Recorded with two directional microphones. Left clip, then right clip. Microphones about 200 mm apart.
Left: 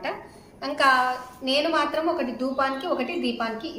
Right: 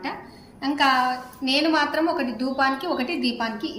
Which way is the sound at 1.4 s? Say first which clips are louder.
Right 2 dB; 25° left (ahead or behind).